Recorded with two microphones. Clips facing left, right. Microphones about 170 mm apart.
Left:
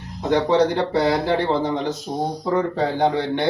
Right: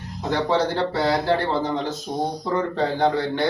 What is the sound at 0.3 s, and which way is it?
Speech, 20° left (ahead or behind).